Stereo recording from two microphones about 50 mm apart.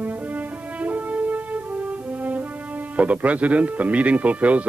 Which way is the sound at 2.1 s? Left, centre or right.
Right.